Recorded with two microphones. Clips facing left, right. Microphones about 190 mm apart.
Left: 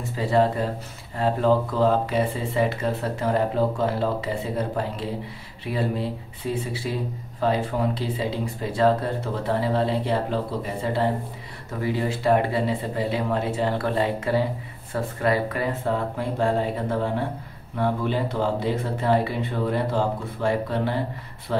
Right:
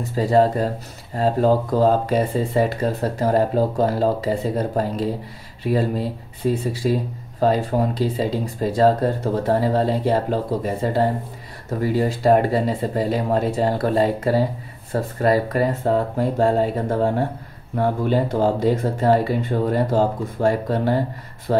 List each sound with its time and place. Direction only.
0.1 s speech: 40° right (ahead or behind)